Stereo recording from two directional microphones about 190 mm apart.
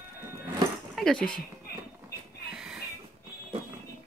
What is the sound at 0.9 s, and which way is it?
Speech, centre (ahead or behind).